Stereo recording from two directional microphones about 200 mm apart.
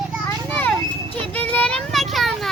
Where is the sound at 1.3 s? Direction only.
10° left (ahead or behind).